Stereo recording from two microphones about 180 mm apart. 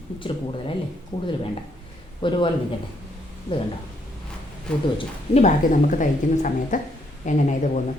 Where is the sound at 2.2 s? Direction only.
30° left (ahead or behind).